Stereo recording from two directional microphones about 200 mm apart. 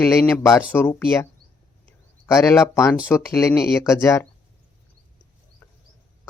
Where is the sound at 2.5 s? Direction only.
15° left (ahead or behind).